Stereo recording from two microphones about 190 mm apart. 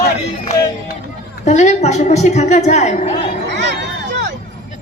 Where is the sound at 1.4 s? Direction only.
40° left (ahead or behind).